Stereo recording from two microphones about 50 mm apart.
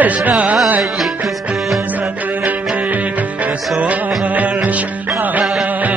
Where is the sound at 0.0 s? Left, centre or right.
Right.